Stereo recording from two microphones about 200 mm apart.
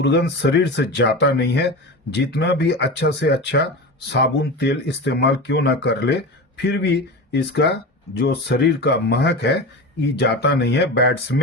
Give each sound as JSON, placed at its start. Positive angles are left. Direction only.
{"t": 0.0, "sound": "speech", "side_deg": 60}